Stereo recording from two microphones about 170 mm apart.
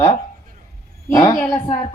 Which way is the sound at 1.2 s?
25° left (ahead or behind).